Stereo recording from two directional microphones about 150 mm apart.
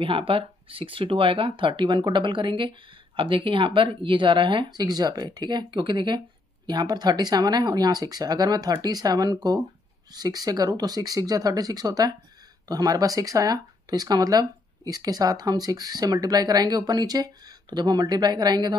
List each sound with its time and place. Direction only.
0.0 s speech: 35° right (ahead or behind)